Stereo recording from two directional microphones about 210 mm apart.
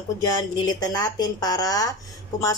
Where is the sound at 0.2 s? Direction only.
20° left (ahead or behind).